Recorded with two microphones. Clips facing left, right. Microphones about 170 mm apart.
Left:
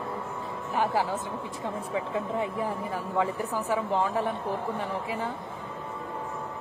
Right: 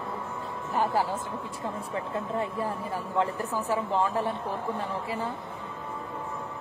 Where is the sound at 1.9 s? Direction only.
15° left (ahead or behind).